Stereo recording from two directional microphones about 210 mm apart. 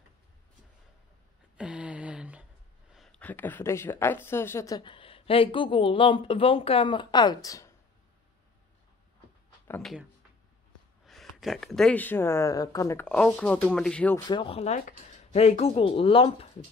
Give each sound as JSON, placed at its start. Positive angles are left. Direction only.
{"t": 1.6, "sound": "a sound", "side_deg": -5}
{"t": 2.9, "sound": "speech", "side_deg": 0}
{"t": 9.7, "sound": "speech", "side_deg": 0}
{"t": 11.1, "sound": "speech", "side_deg": 0}
{"t": 14.2, "sound": "speech", "side_deg": 20}